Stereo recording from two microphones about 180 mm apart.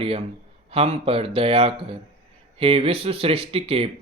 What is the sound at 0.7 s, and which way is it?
Speech, 35° right (ahead or behind).